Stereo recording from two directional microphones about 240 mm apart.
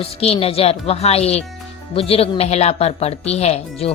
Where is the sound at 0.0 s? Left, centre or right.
Left.